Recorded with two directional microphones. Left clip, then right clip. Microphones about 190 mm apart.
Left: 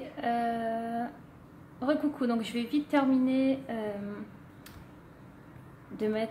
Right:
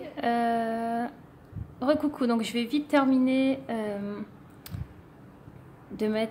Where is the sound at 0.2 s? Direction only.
30° right (ahead or behind).